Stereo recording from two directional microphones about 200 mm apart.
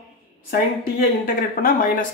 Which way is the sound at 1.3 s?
45° left (ahead or behind).